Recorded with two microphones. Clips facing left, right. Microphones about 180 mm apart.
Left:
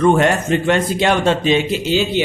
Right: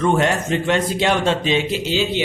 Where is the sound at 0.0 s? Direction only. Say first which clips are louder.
Left 4 dB; 55° left (ahead or behind).